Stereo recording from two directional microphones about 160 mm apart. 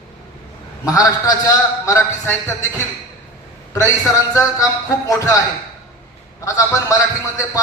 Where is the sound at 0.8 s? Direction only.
25° left (ahead or behind).